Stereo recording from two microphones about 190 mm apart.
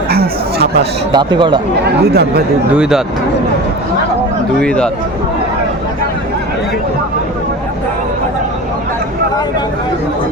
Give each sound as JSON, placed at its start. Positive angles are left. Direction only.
{"t": 0.1, "sound": "chatter", "side_deg": -55}
{"t": 1.1, "sound": "speech", "side_deg": -25}
{"t": 1.8, "sound": "speech", "side_deg": -60}
{"t": 2.7, "sound": "speech", "side_deg": -5}
{"t": 4.6, "sound": "speech", "side_deg": 5}